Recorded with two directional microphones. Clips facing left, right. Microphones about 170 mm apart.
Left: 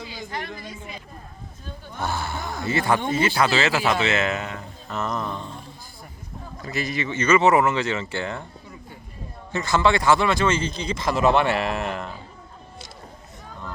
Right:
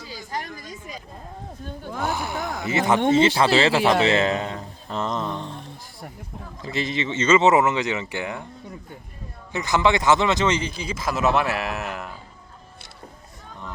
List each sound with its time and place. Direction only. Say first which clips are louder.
0.3 s a sound: right 2 dB; 40° right (ahead or behind)
0.6 s speech: even; 40° right (ahead or behind)
2.0 s speech: right 2 dB; 15° right (ahead or behind)
6.6 s speech: right 1 dB; 25° right (ahead or behind)
9.5 s speech: even; 15° right (ahead or behind)